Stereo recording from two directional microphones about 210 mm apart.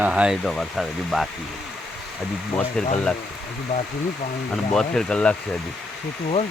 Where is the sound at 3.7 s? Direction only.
30° left (ahead or behind).